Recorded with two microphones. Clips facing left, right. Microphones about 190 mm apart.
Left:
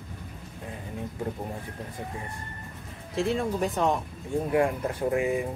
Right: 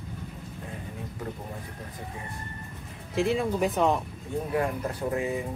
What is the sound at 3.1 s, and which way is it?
Speech, centre (ahead or behind).